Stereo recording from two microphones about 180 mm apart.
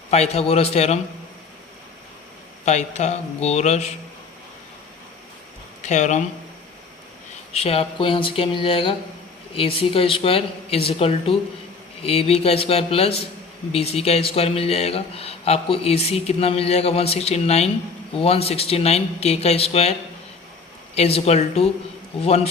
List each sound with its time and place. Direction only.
0.1 s a man's voice: 35° left (ahead or behind)
2.6 s a man's voice: 40° left (ahead or behind)
5.8 s speech: 40° left (ahead or behind)
7.5 s a man's voice: 35° left (ahead or behind)